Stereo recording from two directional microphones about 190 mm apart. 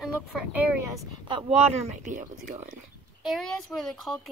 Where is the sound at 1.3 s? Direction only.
35° right (ahead or behind).